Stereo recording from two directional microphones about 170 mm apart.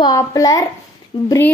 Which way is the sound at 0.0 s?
20° left (ahead or behind).